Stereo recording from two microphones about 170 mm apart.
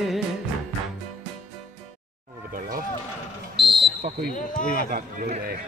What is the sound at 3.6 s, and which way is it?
Basketball bounce, centre (ahead or behind).